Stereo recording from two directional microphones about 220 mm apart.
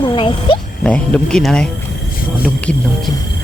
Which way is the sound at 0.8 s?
5° left (ahead or behind).